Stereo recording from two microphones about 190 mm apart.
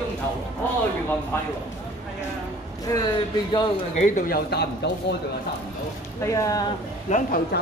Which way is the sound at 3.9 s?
40° left (ahead or behind).